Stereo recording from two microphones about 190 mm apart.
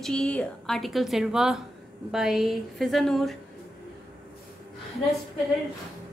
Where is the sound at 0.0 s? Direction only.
5° left (ahead or behind).